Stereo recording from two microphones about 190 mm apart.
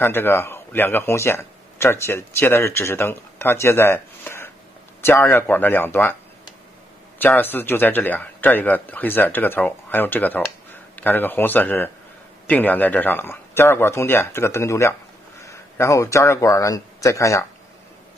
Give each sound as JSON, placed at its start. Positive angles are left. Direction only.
{"t": 0.0, "sound": "a man's voice", "side_deg": 10}
{"t": 7.2, "sound": "a man's voice", "side_deg": 10}